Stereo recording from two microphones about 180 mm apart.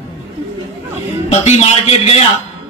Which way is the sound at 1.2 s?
35° left (ahead or behind).